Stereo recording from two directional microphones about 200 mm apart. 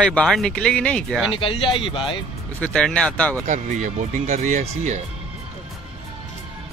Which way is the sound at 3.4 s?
40° right (ahead or behind).